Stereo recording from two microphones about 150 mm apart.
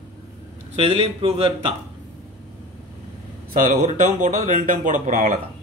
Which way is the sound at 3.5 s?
60° right (ahead or behind).